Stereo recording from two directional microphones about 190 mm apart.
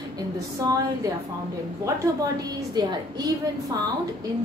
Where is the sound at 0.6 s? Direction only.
20° right (ahead or behind).